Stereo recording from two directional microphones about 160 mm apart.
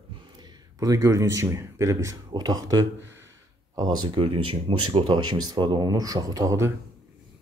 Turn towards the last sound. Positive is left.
turn(degrees=-25)  # may be behind; listen again after turning